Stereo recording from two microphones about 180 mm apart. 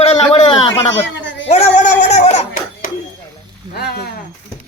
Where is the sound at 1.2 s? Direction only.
90° left.